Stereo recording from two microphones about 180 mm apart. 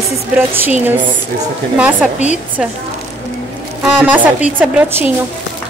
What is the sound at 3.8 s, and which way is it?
A woman's voice, 10° right (ahead or behind).